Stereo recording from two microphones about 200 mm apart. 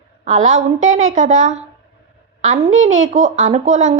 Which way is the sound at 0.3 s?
35° right (ahead or behind).